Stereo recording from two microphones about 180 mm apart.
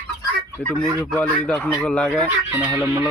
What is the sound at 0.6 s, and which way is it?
Speech, 5° left (ahead or behind).